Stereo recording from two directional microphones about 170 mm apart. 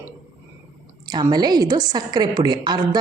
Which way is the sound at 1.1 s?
25° right (ahead or behind).